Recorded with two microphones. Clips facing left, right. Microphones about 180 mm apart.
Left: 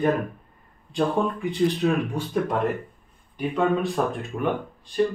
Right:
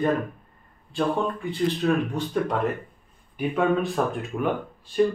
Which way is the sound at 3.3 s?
Centre (ahead or behind).